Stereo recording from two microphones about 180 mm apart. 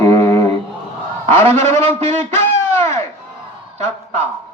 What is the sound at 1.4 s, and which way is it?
Speech, 35° right (ahead or behind).